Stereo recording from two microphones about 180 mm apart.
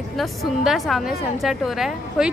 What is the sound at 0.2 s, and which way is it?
A woman's voice, centre (ahead or behind).